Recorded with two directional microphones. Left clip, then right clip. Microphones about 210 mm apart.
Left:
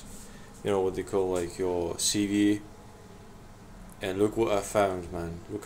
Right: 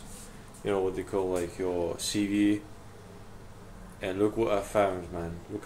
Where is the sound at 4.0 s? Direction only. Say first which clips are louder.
Left 1 dB; 15° left (ahead or behind).